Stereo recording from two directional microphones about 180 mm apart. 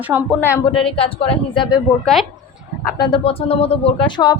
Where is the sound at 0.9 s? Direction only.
30° left (ahead or behind).